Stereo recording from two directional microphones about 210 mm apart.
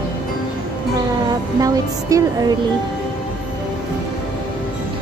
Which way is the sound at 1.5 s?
15° right (ahead or behind).